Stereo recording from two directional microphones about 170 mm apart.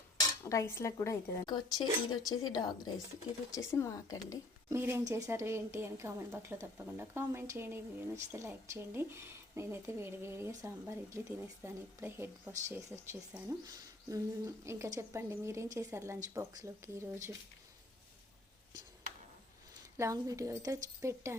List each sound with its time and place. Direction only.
0.4 s a woman's voice: 15° left (ahead or behind)
4.7 s a woman's voice: 15° right (ahead or behind)
20.0 s a woman's voice: 20° right (ahead or behind)